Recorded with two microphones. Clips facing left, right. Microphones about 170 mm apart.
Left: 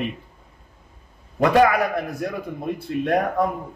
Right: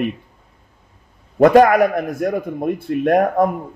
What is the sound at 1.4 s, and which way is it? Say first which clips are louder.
A man's voice: right 6 dB; 50° right (ahead or behind).